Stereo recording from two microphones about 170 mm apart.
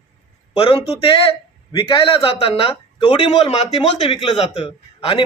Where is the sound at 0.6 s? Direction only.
30° left (ahead or behind).